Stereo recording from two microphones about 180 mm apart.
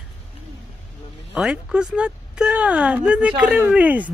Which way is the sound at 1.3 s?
5° right (ahead or behind).